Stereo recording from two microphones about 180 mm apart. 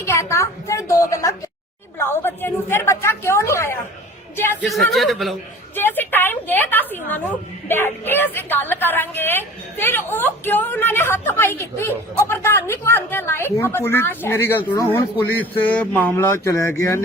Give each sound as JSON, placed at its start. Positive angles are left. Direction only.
{"t": 0.0, "sound": "a sound", "side_deg": 15}
{"t": 2.0, "sound": "a woman's voice", "side_deg": 15}
{"t": 4.6, "sound": "a man's voice", "side_deg": 0}
{"t": 5.7, "sound": "a woman's voice", "side_deg": 10}